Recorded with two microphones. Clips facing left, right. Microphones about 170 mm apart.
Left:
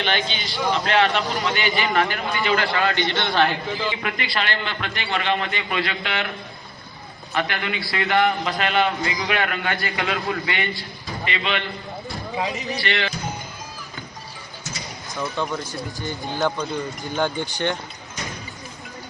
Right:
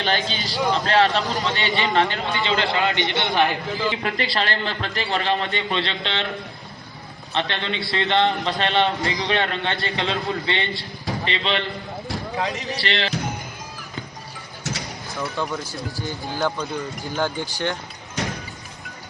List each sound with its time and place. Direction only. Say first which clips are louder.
0.0 s a man's voice: right 1 dB; 35° right (ahead or behind); by 3.8 s 15° right (ahead or behind)
4.0 s a man's voice: right 2 dB; 35° right (ahead or behind)
7.3 s a man's voice: even; 25° right (ahead or behind)
12.4 s speech: left 1 dB; centre (ahead or behind)
12.7 s a man's voice: left 1 dB; 35° right (ahead or behind)
14.6 s bird: right 6 dB; 75° right (ahead or behind)
15.4 s speech: left 1 dB; 10° right (ahead or behind)
16.4 s speech: left 1 dB; centre (ahead or behind)
18.2 s music: right 6 dB; 80° right